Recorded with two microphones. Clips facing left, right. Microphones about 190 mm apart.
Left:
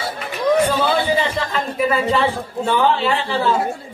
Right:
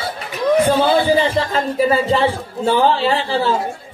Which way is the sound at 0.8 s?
30° right (ahead or behind).